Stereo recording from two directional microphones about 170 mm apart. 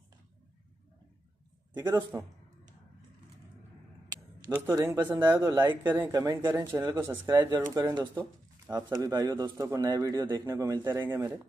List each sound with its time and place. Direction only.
1.7 s a man's voice: 25° right (ahead or behind)
4.7 s speech: 25° right (ahead or behind)
5.0 s speech: 10° right (ahead or behind)
5.4 s speech: 25° right (ahead or behind)
5.9 s speech: 10° right (ahead or behind)
8.1 s a sound: 10° right (ahead or behind)
9.0 s speech: 20° right (ahead or behind)